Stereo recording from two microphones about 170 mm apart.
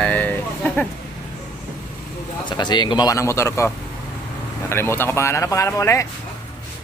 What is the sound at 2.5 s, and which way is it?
A man's voice, 25° left (ahead or behind).